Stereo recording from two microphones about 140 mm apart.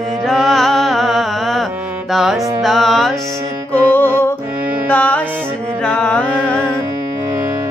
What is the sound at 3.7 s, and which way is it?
Music, 15° left (ahead or behind).